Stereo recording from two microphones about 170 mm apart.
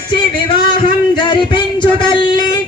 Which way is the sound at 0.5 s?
30° left (ahead or behind).